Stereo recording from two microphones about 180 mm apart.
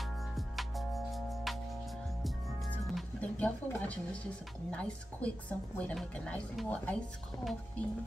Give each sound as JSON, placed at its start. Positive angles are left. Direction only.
{"t": 0.0, "sound": "music", "side_deg": 0}
{"t": 4.6, "sound": "a woman's voice", "side_deg": 5}